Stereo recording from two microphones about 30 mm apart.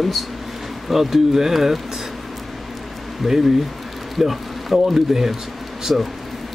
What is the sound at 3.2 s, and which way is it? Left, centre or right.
Speech, centre.